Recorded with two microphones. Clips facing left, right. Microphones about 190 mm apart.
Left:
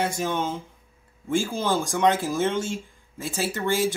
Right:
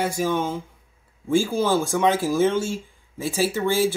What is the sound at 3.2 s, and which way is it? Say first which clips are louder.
Speech: right 5 dB; 10° right (ahead or behind).